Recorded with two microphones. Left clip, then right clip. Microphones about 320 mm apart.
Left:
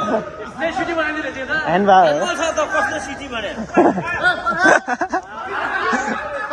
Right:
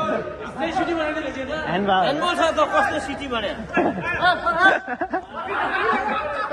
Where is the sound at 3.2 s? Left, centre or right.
Right.